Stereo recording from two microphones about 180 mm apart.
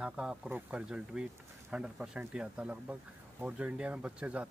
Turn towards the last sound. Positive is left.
turn(degrees=-5)  # may be behind; listen again after turning